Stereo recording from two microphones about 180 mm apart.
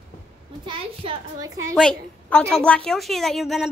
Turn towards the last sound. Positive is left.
turn(degrees=0)  # may be behind; listen again after turning